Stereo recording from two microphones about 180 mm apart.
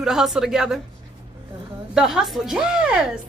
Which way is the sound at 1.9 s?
Centre (ahead or behind).